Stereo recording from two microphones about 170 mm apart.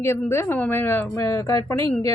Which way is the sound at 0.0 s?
15° left (ahead or behind).